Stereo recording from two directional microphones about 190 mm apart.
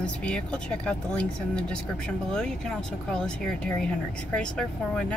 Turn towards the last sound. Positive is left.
turn(degrees=5)  # may be behind; listen again after turning